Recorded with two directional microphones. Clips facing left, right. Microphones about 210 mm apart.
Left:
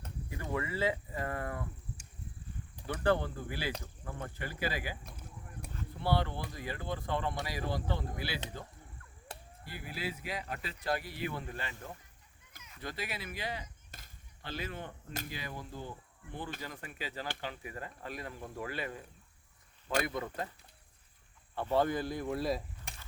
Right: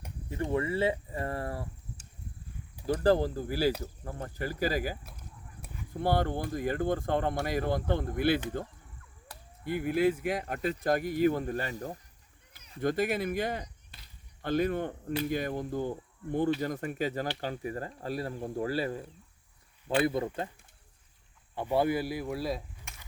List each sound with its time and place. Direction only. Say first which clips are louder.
0.3 s speech: right 7 dB; 25° right (ahead or behind)
2.8 s speech: right 6 dB; 35° right (ahead or behind)
6.0 s speech: right 5 dB; 50° right (ahead or behind)
9.3 s a sound: left 3 dB; 25° left (ahead or behind)
9.6 s speech: right 14 dB; 55° right (ahead or behind)
12.8 s speech: right 13 dB; 50° right (ahead or behind)
13.9 s a sound: left 2 dB; 45° left (ahead or behind)
14.4 s speech: right 13 dB; 50° right (ahead or behind); by 19.0 s 35° right (ahead or behind)
20.2 s speech: right 6 dB; 30° right (ahead or behind)
21.5 s speech: right 3 dB; 10° right (ahead or behind)
22.9 s a sound: left 2 dB; 35° left (ahead or behind)